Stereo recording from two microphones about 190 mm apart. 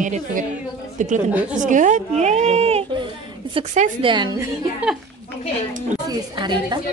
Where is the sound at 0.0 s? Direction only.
40° right (ahead or behind).